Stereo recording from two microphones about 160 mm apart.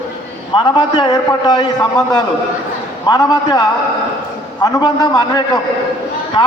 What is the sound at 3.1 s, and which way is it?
A man's voice, 25° left (ahead or behind).